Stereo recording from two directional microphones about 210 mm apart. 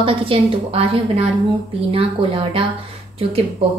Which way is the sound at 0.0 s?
25° right (ahead or behind).